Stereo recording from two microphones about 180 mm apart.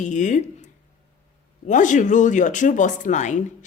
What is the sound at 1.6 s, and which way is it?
Speech, 45° left (ahead or behind).